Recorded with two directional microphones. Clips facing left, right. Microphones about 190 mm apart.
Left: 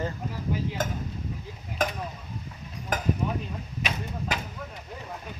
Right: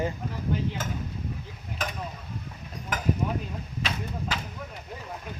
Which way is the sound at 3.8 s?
15° left (ahead or behind).